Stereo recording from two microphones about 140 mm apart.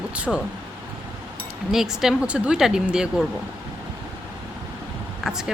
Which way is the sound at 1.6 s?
5° right (ahead or behind).